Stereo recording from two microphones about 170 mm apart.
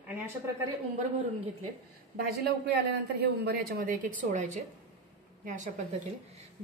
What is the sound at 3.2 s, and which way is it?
A woman's voice, 65° right (ahead or behind).